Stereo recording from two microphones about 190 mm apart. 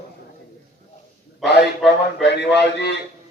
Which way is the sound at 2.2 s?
65° left (ahead or behind).